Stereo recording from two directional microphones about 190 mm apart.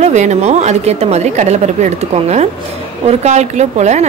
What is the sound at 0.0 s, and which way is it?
A woman's voice, 40° right (ahead or behind).